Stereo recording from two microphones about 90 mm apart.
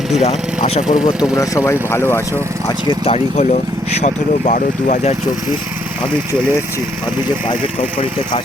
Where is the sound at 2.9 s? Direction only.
65° left (ahead or behind).